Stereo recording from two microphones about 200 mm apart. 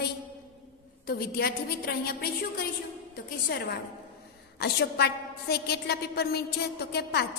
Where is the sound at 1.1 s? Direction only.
50° left (ahead or behind).